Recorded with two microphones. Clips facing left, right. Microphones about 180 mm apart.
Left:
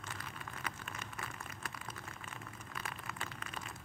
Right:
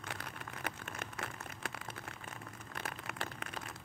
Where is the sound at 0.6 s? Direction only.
60° right (ahead or behind).